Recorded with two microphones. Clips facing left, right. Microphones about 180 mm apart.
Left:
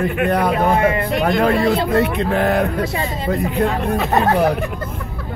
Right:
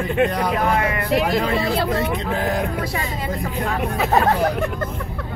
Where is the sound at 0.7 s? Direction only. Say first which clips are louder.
Left 5 dB; 30° left (ahead or behind).